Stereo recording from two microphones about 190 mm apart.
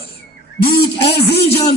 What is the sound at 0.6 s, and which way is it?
Speech, 60° left (ahead or behind).